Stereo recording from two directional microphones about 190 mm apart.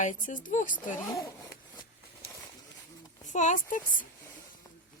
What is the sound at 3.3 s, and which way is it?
Speech, 40° left (ahead or behind).